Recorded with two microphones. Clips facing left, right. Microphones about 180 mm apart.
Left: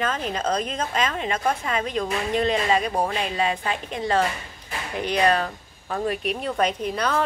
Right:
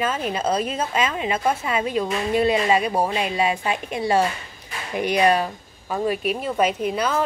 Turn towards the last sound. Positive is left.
turn(degrees=-5)  # may be behind; listen again after turning